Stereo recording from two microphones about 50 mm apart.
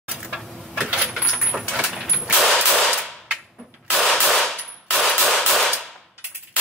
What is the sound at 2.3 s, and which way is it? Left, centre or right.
Machine gun, centre.